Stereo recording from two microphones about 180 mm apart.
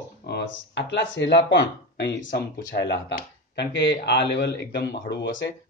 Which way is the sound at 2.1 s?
85° left.